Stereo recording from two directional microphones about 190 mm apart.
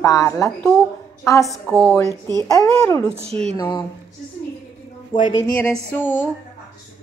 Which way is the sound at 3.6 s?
25° left (ahead or behind).